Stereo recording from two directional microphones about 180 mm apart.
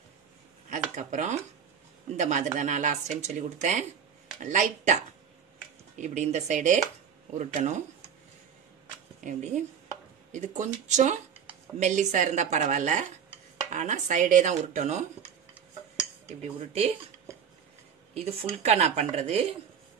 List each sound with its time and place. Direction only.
0.7 s speech: 45° right (ahead or behind)
9.2 s speech: 45° right (ahead or behind)
16.3 s speech: 35° right (ahead or behind)
18.1 s speech: 35° right (ahead or behind)